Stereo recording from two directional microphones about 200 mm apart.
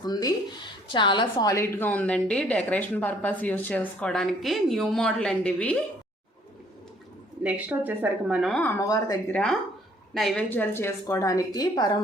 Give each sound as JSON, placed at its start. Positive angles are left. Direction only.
{"t": 0.0, "sound": "a woman's voice", "side_deg": 20}
{"t": 7.4, "sound": "speech", "side_deg": -10}
{"t": 8.8, "sound": "a woman's voice", "side_deg": 15}
{"t": 9.3, "sound": "a woman's voice", "side_deg": 5}